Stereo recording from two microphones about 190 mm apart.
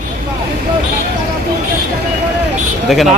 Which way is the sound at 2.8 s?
Centre (ahead or behind).